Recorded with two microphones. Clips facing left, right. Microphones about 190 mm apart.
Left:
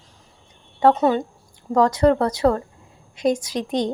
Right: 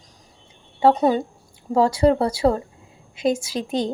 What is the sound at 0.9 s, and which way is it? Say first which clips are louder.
Speech: even; 15° right (ahead or behind).